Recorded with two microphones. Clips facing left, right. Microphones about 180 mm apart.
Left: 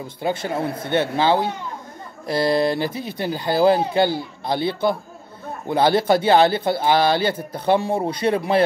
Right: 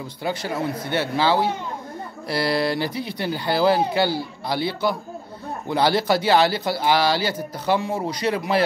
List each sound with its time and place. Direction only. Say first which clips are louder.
0.2 s speech: left 2 dB; 25° left (ahead or behind)
5.9 s speech: left 4 dB; 50° left (ahead or behind)
6.5 s speech: left 2 dB; 25° left (ahead or behind)